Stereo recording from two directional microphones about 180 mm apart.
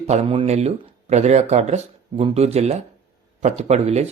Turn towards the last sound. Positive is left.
turn(degrees=-35)  # may be behind; listen again after turning